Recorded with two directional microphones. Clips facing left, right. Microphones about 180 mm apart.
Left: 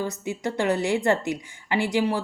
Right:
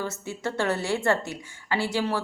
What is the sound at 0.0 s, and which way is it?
A woman's voice, 15° left (ahead or behind).